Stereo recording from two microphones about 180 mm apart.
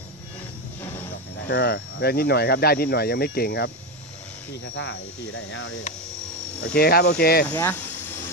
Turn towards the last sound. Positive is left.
turn(degrees=15)  # may be behind; listen again after turning